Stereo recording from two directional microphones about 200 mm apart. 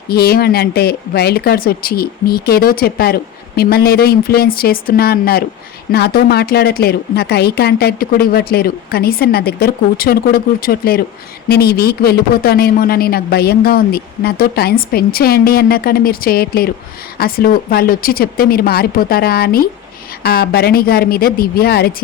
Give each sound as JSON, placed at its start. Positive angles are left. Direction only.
{"t": 0.1, "sound": "speech", "side_deg": 50}